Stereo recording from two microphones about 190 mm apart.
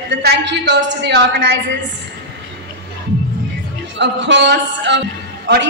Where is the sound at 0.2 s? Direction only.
65° right (ahead or behind).